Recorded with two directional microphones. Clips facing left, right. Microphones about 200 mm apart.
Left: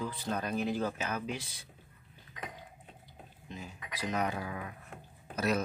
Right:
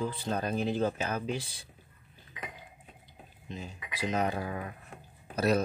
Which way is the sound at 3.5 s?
25° right (ahead or behind).